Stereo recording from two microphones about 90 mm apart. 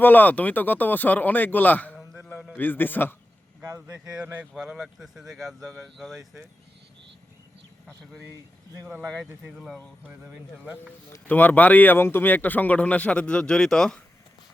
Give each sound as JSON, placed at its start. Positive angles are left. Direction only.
{"t": 0.0, "sound": "speech", "side_deg": 20}
{"t": 3.8, "sound": "speech", "side_deg": -15}
{"t": 9.0, "sound": "speech", "side_deg": 5}
{"t": 11.3, "sound": "speech", "side_deg": 20}